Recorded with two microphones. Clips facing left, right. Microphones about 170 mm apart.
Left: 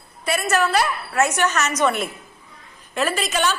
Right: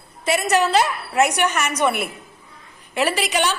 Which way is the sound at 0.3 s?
20° right (ahead or behind).